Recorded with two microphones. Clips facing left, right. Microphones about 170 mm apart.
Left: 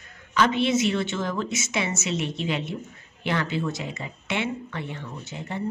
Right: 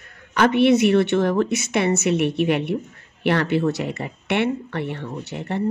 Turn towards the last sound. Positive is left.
turn(degrees=-65)  # may be behind; listen again after turning